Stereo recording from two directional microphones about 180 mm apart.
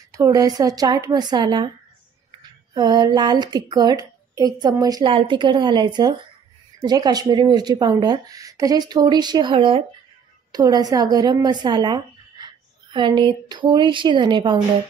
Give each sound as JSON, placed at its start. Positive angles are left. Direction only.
{"t": 0.1, "sound": "a woman's voice", "side_deg": -20}
{"t": 2.7, "sound": "a woman's voice", "side_deg": -25}